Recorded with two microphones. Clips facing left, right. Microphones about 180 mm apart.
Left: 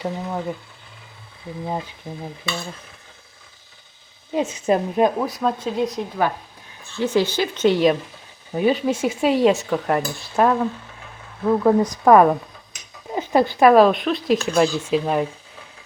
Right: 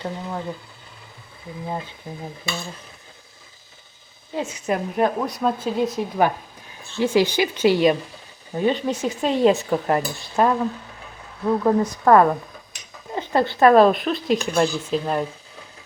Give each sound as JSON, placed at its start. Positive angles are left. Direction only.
{"t": 0.0, "sound": "speech", "side_deg": 10}
{"t": 4.3, "sound": "a woman's voice", "side_deg": 20}
{"t": 5.2, "sound": "speech", "side_deg": 0}
{"t": 8.5, "sound": "speech", "side_deg": 10}